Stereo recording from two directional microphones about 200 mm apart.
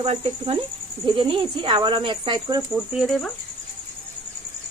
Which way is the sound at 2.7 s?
Centre (ahead or behind).